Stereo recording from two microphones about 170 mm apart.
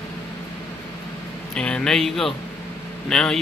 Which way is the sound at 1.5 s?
5° left (ahead or behind).